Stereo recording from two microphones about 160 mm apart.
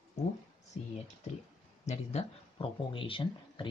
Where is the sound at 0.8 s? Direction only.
40° left (ahead or behind).